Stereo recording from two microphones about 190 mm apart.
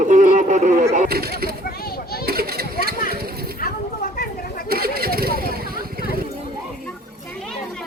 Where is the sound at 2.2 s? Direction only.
55° right (ahead or behind).